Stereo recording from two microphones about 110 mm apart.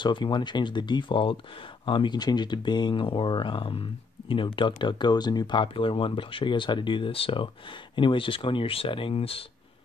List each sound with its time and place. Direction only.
0.0 s speech: 45° left (ahead or behind)